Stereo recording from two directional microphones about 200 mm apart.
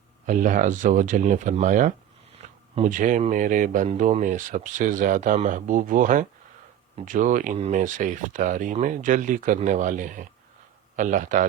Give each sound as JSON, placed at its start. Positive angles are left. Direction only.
{"t": 0.3, "sound": "speech", "side_deg": -40}